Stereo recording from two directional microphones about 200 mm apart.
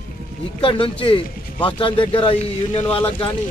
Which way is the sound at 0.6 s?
25° left (ahead or behind).